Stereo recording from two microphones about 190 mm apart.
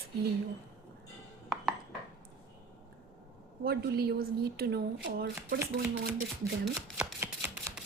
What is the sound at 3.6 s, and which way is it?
A woman's voice, 55° right (ahead or behind).